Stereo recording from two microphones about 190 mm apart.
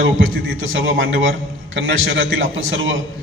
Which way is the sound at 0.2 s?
90° right.